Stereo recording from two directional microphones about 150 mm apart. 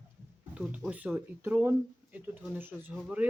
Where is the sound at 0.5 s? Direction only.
5° right (ahead or behind).